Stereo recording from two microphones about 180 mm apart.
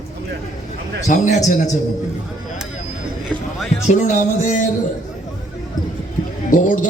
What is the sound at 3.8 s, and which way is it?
Music, 40° left (ahead or behind).